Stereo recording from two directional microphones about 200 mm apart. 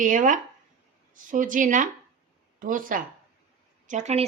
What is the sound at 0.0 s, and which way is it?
A woman's voice, 40° right (ahead or behind).